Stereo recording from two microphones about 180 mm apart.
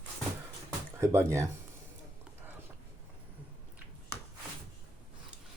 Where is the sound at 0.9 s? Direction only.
15° right (ahead or behind).